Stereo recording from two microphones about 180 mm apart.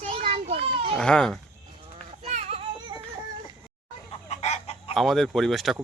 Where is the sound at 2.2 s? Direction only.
35° right (ahead or behind).